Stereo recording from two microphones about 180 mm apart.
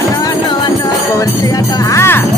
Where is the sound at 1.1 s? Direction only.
15° left (ahead or behind).